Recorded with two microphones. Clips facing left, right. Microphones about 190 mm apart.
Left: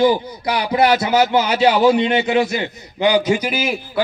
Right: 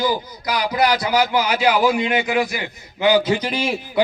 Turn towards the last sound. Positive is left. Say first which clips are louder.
# left 2 dB
turn(degrees=5)  # may be behind; listen again after turning